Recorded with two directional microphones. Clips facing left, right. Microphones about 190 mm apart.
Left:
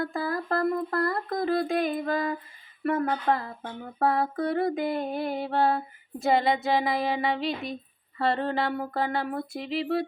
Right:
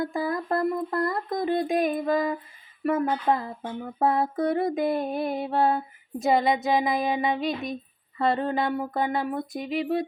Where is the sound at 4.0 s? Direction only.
20° right (ahead or behind).